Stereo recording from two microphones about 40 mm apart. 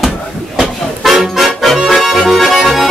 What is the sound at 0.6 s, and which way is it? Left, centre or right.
Accordion, centre.